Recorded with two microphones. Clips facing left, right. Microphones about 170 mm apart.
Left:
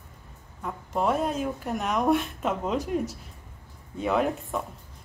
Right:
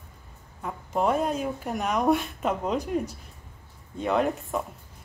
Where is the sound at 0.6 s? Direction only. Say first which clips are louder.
Right 1 dB; 5° right (ahead or behind).